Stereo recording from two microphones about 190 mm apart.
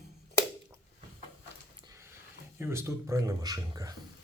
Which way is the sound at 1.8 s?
15° right (ahead or behind).